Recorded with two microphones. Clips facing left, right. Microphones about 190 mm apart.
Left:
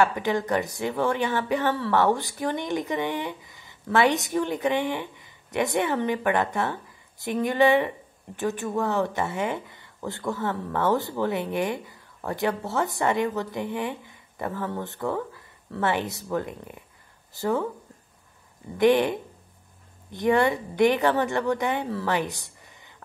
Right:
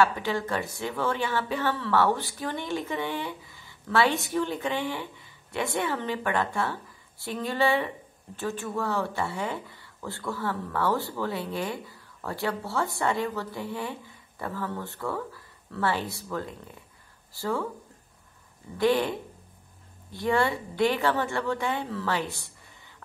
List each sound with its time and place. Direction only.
0.0 s speech: 15° left (ahead or behind)
18.8 s speech: 20° left (ahead or behind)